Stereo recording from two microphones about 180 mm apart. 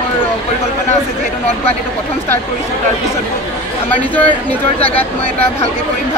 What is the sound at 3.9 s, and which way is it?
Speech, 10° left (ahead or behind).